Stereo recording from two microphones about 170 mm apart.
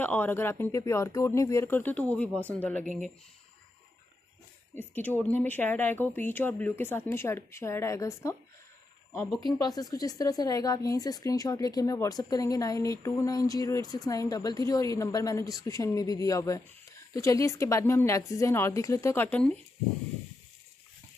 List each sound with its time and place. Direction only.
0.0 s speech: 10° left (ahead or behind)
4.7 s speech: 10° left (ahead or behind)
9.4 s speech: 20° left (ahead or behind)